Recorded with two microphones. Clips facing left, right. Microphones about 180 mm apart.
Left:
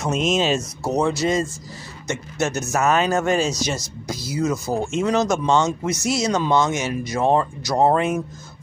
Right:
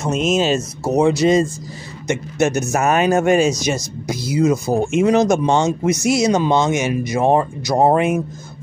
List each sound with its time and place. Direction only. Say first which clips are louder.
0.0 s speech: right 3 dB; centre (ahead or behind)
1.0 s speech: right 9 dB; 15° right (ahead or behind)